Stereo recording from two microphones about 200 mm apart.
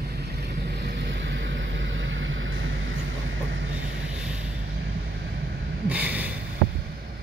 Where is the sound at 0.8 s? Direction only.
60° right (ahead or behind).